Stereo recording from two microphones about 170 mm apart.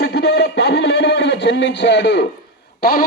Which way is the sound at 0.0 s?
70° left (ahead or behind).